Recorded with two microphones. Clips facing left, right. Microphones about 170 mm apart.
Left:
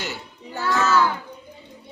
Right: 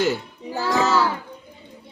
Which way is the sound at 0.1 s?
30° right (ahead or behind).